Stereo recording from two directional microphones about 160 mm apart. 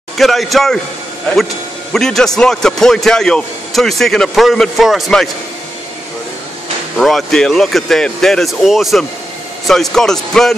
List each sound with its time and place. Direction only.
0.2 s speech: centre (ahead or behind)
7.0 s speech: centre (ahead or behind)